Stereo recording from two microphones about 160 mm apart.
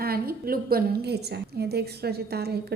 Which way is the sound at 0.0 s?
70° right (ahead or behind).